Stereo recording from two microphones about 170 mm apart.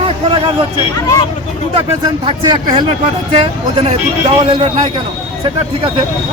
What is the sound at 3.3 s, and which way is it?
Speech, 40° right (ahead or behind).